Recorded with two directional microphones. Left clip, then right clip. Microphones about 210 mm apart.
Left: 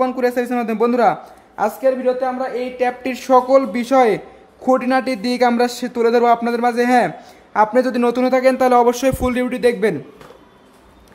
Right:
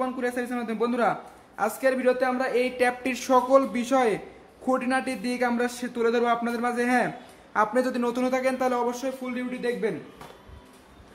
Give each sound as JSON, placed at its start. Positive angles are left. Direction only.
{"t": 0.0, "sound": "speech", "side_deg": 15}
{"t": 1.8, "sound": "speech", "side_deg": 5}
{"t": 2.9, "sound": "speech", "side_deg": 10}
{"t": 9.2, "sound": "speech", "side_deg": 50}